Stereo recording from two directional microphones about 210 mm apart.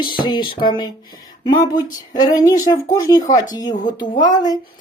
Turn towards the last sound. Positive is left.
turn(degrees=20)  # may be behind; listen again after turning